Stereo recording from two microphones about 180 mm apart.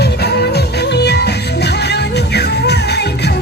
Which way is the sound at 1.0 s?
65° left (ahead or behind).